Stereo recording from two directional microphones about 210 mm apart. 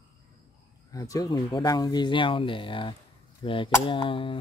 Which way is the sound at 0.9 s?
15° left (ahead or behind).